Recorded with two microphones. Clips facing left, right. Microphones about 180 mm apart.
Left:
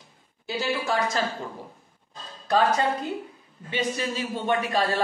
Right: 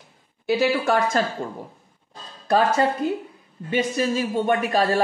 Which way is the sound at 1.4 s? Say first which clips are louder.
Right 5 dB; 50° right (ahead or behind).